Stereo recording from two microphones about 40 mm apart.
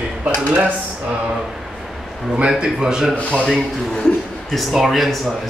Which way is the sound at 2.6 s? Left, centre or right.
Centre.